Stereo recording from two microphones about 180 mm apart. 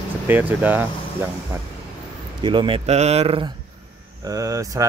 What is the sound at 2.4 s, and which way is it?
Speech, 25° right (ahead or behind).